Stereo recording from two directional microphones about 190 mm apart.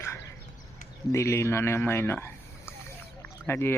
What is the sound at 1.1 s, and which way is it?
Speech, 15° left (ahead or behind).